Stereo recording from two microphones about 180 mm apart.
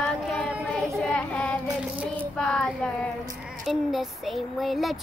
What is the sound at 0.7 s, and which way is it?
Child singing, centre (ahead or behind).